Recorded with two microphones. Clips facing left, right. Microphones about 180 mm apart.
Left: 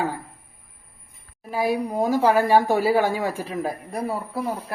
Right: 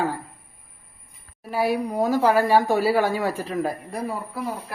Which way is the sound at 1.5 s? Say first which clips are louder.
Even; 15° left (ahead or behind).